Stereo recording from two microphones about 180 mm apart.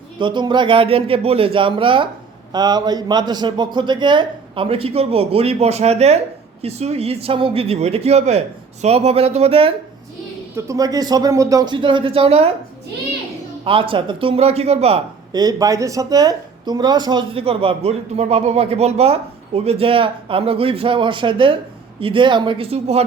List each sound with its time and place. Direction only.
0.2 s a man's voice: 25° right (ahead or behind)
10.5 s a man's voice: 20° right (ahead or behind)
13.7 s a man's voice: 30° right (ahead or behind)